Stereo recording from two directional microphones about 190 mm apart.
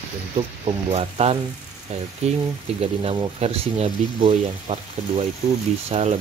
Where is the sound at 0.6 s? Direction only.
30° right (ahead or behind).